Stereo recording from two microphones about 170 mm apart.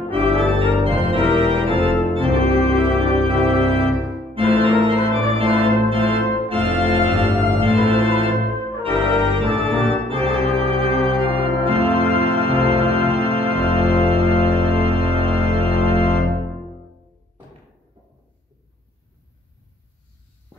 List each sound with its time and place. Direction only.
0.1 s organ: 35° right (ahead or behind)
8.8 s music: 35° right (ahead or behind)
10.0 s organ: 35° right (ahead or behind)